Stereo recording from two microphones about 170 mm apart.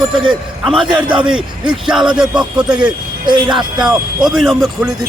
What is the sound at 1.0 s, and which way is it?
Speech, 30° right (ahead or behind).